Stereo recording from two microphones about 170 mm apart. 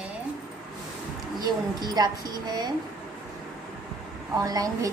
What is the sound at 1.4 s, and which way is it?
A woman's voice, 25° right (ahead or behind).